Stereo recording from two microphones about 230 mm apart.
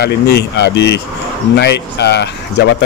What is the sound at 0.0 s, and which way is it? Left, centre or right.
Speech, left.